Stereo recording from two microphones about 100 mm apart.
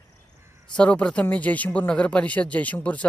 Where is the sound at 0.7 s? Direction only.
10° left (ahead or behind).